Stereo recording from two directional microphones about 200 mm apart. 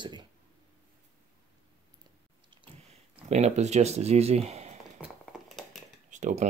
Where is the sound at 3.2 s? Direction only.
35° right (ahead or behind).